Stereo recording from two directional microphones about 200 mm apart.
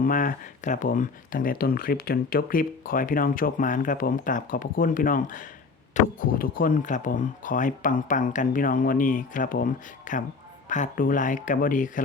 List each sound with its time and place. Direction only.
0.0 s speech: 40° left (ahead or behind)